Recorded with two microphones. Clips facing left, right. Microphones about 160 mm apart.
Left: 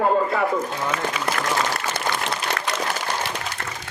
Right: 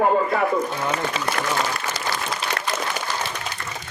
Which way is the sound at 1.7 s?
60° left (ahead or behind).